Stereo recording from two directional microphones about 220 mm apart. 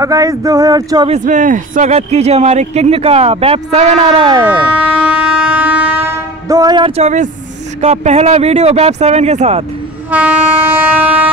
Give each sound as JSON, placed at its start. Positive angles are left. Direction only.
{"t": 0.0, "sound": "speech", "side_deg": -15}
{"t": 1.1, "sound": "speech", "side_deg": -35}
{"t": 4.7, "sound": "train", "side_deg": -5}
{"t": 6.5, "sound": "speech", "side_deg": -20}
{"t": 10.1, "sound": "train", "side_deg": -10}